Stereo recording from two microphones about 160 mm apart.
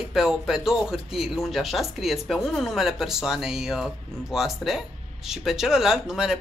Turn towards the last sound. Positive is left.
turn(degrees=-5)  # may be behind; listen again after turning